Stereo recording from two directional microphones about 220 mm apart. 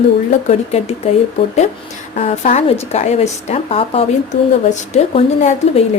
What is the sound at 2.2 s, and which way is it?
Speech, 30° left (ahead or behind).